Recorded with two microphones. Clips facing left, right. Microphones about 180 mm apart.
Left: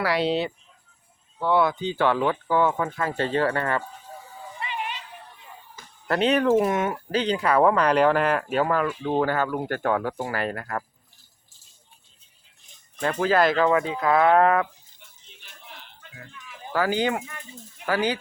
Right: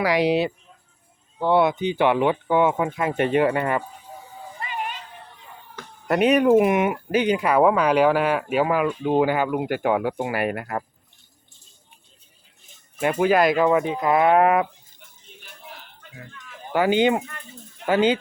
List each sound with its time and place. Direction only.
0.0 s speech: 15° right (ahead or behind)
4.6 s a sound: 45° right (ahead or behind)
6.1 s speech: 15° right (ahead or behind)
13.0 s speech: 10° right (ahead or behind)
16.7 s speech: 20° right (ahead or behind)